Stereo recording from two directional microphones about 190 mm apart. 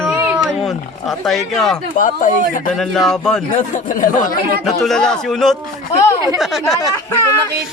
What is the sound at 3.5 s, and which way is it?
Speech, 45° left (ahead or behind).